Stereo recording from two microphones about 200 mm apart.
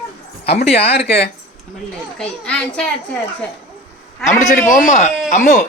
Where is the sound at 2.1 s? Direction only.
5° left (ahead or behind).